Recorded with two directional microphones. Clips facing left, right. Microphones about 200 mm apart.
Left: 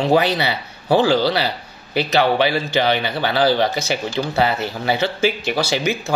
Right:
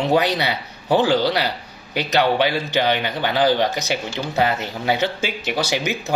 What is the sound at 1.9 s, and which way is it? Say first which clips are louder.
Speech: left 2 dB; 15° right (ahead or behind).